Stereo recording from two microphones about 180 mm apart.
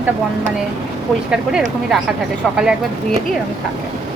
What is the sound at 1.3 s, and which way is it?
Speech, 5° right (ahead or behind).